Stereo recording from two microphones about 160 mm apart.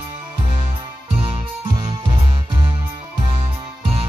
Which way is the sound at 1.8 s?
35° right (ahead or behind).